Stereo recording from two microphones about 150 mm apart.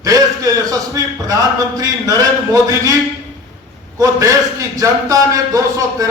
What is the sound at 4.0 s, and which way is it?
A man's voice, 20° right (ahead or behind).